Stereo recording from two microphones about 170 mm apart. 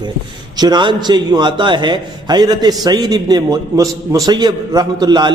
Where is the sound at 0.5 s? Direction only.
25° right (ahead or behind).